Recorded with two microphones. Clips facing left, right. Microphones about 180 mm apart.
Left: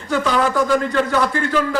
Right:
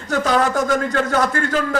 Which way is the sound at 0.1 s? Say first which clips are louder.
Even; 40° right (ahead or behind).